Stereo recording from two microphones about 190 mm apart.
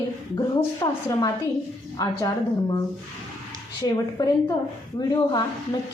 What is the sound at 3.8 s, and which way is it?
A woman's voice, 20° left (ahead or behind).